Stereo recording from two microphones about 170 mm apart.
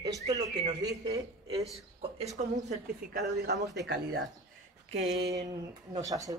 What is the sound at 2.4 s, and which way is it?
Speech, 45° right (ahead or behind).